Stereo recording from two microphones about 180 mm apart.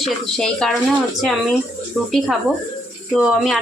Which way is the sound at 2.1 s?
Centre (ahead or behind).